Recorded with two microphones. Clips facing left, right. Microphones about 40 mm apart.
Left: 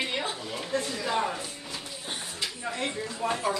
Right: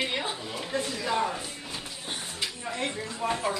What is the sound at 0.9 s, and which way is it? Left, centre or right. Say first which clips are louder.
Music: right 2 dB; centre.